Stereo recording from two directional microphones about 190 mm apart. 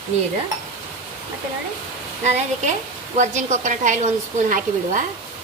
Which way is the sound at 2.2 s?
35° right (ahead or behind).